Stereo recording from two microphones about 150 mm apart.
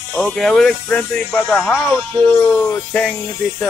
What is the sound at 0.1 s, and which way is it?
Speech, 5° left (ahead or behind).